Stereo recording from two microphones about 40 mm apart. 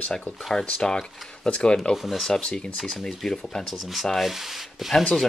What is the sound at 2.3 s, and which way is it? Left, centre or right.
Speech, left.